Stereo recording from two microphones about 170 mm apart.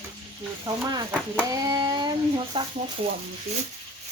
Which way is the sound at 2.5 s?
30° right (ahead or behind).